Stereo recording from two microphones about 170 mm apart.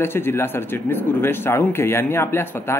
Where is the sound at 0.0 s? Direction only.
15° left (ahead or behind).